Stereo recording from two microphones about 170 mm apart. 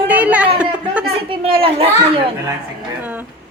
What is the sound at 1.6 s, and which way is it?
Speech, 35° right (ahead or behind).